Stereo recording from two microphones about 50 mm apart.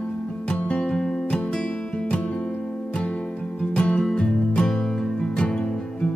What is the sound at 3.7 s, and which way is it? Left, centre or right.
Music, centre.